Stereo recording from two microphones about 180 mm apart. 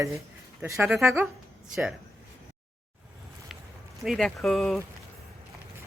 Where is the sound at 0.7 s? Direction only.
5° right (ahead or behind).